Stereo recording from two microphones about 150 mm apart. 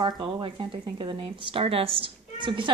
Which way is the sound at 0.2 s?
35° right (ahead or behind).